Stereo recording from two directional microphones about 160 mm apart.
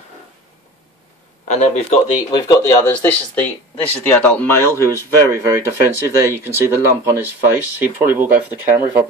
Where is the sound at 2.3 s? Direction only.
25° left (ahead or behind).